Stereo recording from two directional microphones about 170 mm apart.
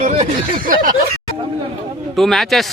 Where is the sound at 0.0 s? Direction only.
45° right (ahead or behind).